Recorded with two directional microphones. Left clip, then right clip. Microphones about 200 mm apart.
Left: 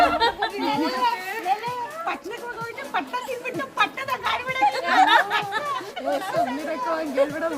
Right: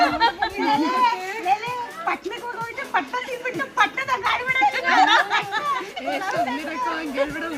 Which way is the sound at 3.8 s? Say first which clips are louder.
Right 3 dB; 45° left (ahead or behind).